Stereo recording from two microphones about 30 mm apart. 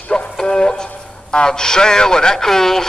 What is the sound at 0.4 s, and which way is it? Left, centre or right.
Music, left.